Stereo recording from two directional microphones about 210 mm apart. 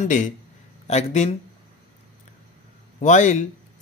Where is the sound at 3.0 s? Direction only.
35° left (ahead or behind).